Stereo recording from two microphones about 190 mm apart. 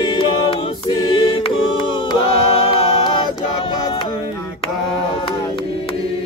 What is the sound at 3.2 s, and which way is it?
Choir, 30° left (ahead or behind).